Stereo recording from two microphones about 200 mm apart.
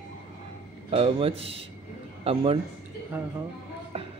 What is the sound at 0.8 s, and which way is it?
Speech, 30° right (ahead or behind).